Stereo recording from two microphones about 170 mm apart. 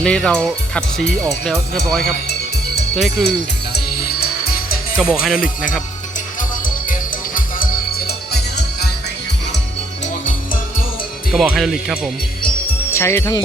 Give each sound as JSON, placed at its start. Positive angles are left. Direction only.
{"t": 0.0, "sound": "speech", "side_deg": 5}
{"t": 4.2, "sound": "music", "side_deg": 60}
{"t": 4.9, "sound": "speech", "side_deg": -5}
{"t": 6.8, "sound": "music", "side_deg": 55}
{"t": 10.2, "sound": "music", "side_deg": 55}
{"t": 11.3, "sound": "speech", "side_deg": 0}
{"t": 12.9, "sound": "speech", "side_deg": 15}